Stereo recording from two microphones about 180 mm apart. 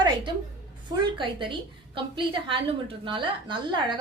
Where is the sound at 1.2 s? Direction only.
25° right (ahead or behind).